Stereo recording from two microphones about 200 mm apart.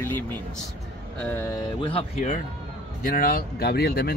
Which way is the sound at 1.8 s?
30° left (ahead or behind).